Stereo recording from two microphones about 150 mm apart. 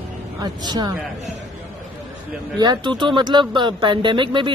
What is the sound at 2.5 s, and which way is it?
Speech, 30° right (ahead or behind).